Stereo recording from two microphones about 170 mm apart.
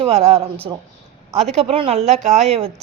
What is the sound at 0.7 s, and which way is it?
Speech, 25° right (ahead or behind).